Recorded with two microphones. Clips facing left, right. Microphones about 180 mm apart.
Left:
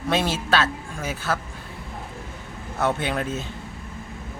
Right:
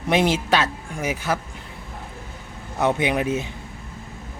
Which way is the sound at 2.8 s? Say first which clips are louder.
Right 3 dB; 15° right (ahead or behind).